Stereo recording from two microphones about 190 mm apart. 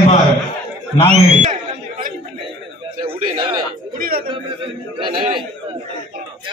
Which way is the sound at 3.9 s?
50° right (ahead or behind).